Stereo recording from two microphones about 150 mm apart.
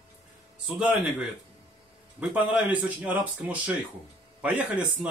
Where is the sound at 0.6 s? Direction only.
5° right (ahead or behind).